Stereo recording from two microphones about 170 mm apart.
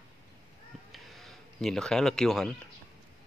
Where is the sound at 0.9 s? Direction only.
Centre (ahead or behind).